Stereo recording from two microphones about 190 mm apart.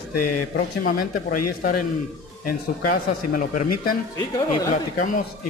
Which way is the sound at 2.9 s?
45° left (ahead or behind).